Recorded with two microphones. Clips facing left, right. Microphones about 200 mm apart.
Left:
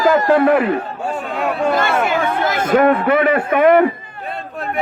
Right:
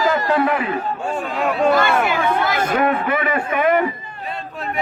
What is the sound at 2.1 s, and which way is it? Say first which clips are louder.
A man's voice: left 1 dB; 50° left (ahead or behind).